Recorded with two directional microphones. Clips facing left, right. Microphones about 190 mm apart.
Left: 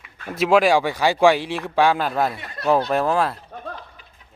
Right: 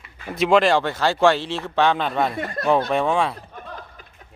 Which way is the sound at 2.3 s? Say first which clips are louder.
Right 6 dB; 50° right (ahead or behind).